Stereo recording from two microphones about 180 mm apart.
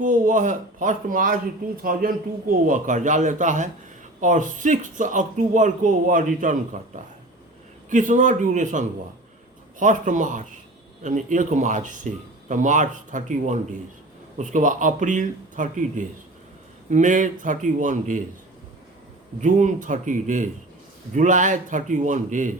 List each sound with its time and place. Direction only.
0.0 s speech: 45° right (ahead or behind)
19.4 s speech: 40° right (ahead or behind)